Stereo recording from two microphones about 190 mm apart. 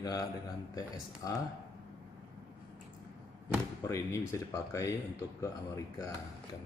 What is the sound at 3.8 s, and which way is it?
Speech, 15° left (ahead or behind).